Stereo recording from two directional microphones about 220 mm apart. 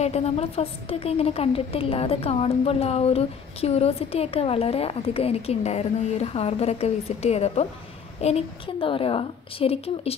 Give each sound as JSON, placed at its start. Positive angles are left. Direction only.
{"t": 0.0, "sound": "a woman's voice", "side_deg": 30}